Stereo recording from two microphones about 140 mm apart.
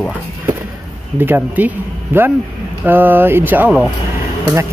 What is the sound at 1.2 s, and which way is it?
Speech, 15° right (ahead or behind).